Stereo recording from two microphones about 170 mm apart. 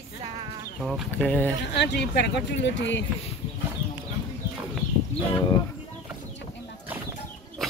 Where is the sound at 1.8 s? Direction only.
85° left.